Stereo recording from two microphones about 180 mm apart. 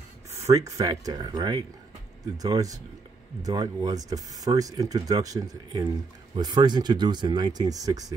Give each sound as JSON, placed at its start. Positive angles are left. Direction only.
{"t": 0.3, "sound": "speech", "side_deg": -15}